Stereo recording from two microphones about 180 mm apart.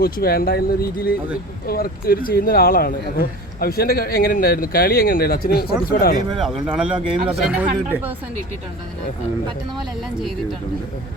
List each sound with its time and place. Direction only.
0.0 s speech: 55° left (ahead or behind)
6.3 s speech: centre (ahead or behind)